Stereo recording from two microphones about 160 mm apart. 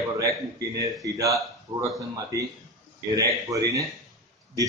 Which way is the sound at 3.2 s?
20° right (ahead or behind).